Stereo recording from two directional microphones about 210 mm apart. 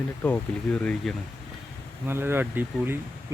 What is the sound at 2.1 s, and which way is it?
Speech, 10° right (ahead or behind).